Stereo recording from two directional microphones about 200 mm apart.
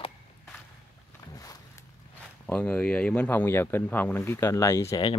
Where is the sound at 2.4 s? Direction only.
5° left (ahead or behind).